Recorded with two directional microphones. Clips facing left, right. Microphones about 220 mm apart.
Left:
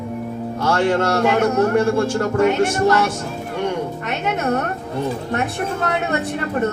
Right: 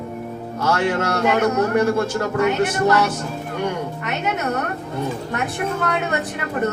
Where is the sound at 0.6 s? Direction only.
30° left (ahead or behind).